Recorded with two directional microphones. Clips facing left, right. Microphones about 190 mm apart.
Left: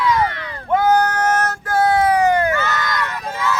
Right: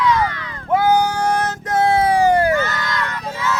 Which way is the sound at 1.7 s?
25° right (ahead or behind).